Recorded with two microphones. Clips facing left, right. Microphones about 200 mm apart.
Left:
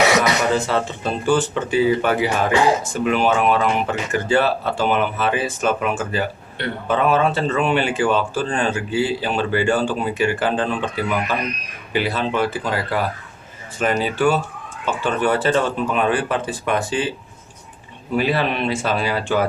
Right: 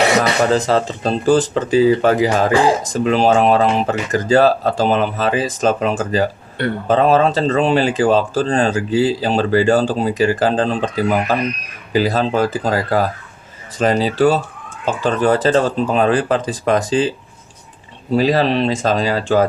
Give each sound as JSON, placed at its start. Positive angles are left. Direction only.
{"t": 0.0, "sound": "speech", "side_deg": -30}
{"t": 16.6, "sound": "speech", "side_deg": -90}
{"t": 18.1, "sound": "speech", "side_deg": -35}